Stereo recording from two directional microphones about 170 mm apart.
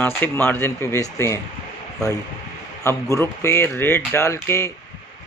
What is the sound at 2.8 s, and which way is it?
Speech, 15° left (ahead or behind).